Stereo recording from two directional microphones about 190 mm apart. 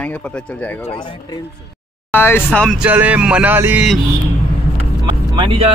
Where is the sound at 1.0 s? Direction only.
25° left (ahead or behind).